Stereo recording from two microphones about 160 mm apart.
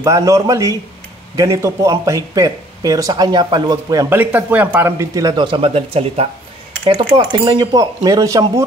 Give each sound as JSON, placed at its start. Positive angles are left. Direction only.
{"t": 0.0, "sound": "speech", "side_deg": -20}
{"t": 4.2, "sound": "speech", "side_deg": -10}
{"t": 6.8, "sound": "speech", "side_deg": -30}